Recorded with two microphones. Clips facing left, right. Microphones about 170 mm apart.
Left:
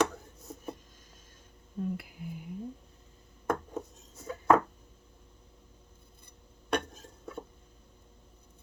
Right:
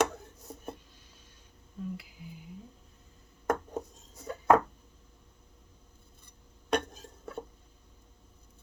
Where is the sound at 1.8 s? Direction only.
55° left (ahead or behind).